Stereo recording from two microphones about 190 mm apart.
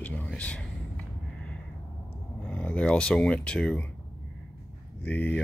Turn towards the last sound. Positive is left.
turn(degrees=10)  # may be behind; listen again after turning